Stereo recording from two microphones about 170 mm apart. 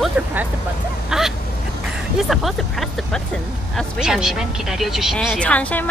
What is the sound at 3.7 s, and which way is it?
Speech, centre (ahead or behind).